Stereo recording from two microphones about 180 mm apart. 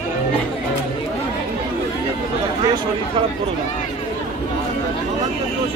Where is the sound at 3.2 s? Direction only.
30° right (ahead or behind).